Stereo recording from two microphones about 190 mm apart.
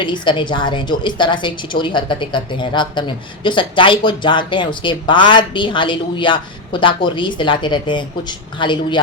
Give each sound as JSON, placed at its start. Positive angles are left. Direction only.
{"t": 0.0, "sound": "a woman's voice", "side_deg": 25}